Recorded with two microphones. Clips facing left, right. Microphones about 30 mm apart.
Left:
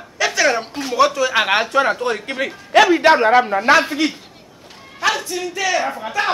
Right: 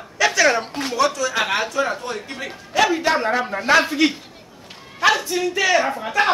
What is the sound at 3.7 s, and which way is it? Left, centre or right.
Speech, centre.